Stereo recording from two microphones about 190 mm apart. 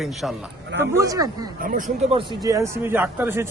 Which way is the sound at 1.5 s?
50° right (ahead or behind).